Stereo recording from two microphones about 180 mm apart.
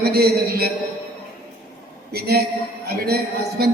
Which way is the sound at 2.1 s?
60° right (ahead or behind).